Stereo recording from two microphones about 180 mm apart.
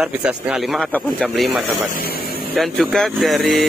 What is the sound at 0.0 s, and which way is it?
Speech, 5° right (ahead or behind).